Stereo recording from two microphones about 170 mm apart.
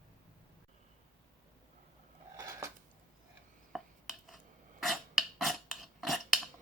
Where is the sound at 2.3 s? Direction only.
20° right (ahead or behind).